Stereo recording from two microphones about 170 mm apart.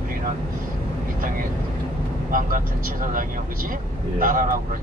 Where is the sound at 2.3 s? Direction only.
55° right (ahead or behind).